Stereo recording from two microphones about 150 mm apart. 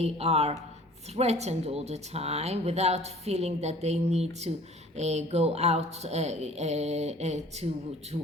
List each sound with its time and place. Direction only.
0.0 s speech: 45° right (ahead or behind)